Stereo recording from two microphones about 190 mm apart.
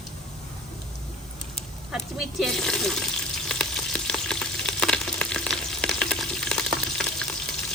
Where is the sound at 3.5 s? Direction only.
5° left (ahead or behind).